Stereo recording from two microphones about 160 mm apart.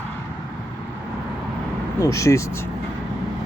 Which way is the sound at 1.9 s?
20° left (ahead or behind).